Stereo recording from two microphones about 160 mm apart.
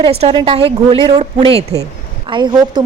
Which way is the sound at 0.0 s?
40° right (ahead or behind).